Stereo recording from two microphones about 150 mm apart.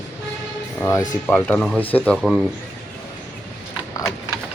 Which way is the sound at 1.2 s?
10° left (ahead or behind).